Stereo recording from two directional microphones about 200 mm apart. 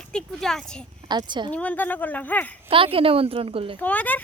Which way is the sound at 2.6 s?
25° right (ahead or behind).